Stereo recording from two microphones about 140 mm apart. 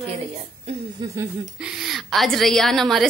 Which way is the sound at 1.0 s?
30° right (ahead or behind).